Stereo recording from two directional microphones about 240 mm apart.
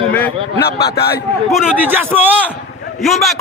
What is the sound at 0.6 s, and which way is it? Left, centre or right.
Speech, left.